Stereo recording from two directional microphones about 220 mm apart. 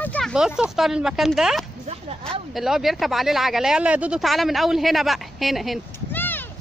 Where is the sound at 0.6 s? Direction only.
Centre (ahead or behind).